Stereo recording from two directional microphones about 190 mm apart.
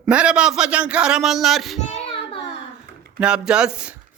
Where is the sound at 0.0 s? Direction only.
5° right (ahead or behind).